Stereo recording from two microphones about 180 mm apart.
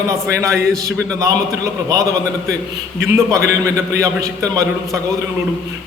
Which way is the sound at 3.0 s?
15° right (ahead or behind).